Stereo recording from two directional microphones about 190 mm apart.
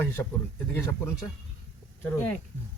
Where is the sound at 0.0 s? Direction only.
10° left (ahead or behind).